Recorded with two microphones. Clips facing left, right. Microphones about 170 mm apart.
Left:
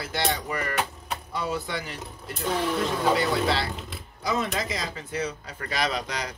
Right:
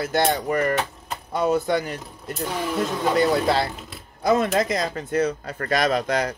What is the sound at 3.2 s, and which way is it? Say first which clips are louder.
Speech: right 5 dB; 45° right (ahead or behind).